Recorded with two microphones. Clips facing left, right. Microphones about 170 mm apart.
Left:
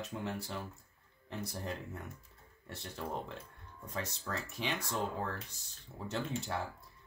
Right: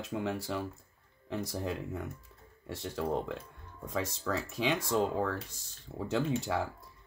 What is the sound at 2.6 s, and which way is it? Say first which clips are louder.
Speech: right 8 dB; 90° right.